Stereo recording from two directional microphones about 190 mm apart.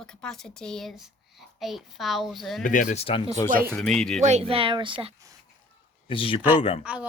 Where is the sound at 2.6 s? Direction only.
45° left (ahead or behind).